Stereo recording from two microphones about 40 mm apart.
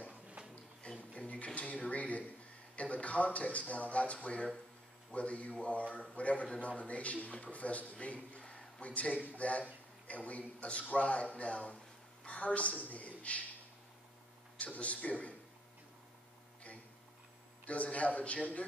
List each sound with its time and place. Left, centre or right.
0.1 s a sound: right
0.8 s music: left
1.3 s dishes: left
2.7 s a man's voice: left
8.5 s a sound: left
8.8 s a man's voice: left
14.6 s a man's voice: left
17.9 s a man's voice: left